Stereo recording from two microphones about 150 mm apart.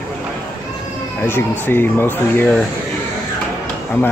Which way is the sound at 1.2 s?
15° left (ahead or behind).